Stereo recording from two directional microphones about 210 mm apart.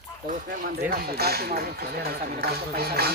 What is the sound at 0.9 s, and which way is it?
Speech, 50° right (ahead or behind).